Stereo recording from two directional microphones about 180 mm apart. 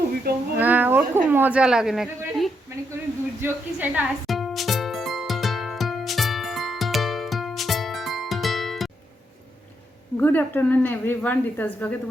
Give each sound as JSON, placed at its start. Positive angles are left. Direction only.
{"t": 0.3, "sound": "speech", "side_deg": -60}
{"t": 0.6, "sound": "a woman's voice", "side_deg": -10}
{"t": 3.4, "sound": "music", "side_deg": -10}
{"t": 10.2, "sound": "a woman's voice", "side_deg": 10}